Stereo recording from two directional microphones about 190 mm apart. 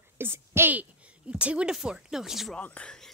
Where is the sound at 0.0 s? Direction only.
10° right (ahead or behind).